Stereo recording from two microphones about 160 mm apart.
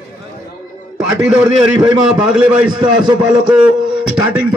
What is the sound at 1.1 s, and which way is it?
A man's voice, 15° right (ahead or behind).